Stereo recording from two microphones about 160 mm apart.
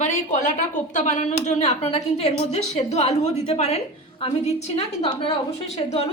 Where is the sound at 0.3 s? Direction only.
50° left (ahead or behind).